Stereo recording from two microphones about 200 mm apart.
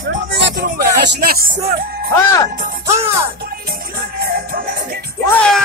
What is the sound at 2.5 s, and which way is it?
Music, 45° right (ahead or behind).